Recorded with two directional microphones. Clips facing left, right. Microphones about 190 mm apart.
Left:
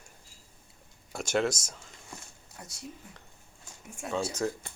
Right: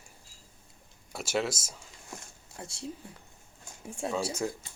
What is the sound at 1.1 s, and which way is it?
Speech, 5° right (ahead or behind).